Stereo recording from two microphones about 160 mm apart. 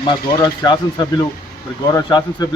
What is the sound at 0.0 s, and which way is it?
A man's voice, 25° left (ahead or behind).